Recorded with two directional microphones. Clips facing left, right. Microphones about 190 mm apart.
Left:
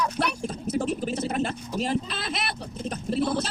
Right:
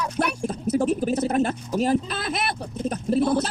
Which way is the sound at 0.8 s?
45° right (ahead or behind).